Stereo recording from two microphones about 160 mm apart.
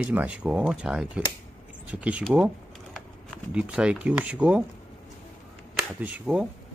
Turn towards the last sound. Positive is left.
turn(degrees=-5)  # may be behind; listen again after turning